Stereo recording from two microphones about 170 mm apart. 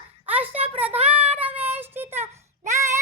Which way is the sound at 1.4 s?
10° right (ahead or behind).